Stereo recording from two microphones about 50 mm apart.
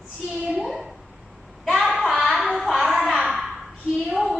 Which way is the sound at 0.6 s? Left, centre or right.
Centre.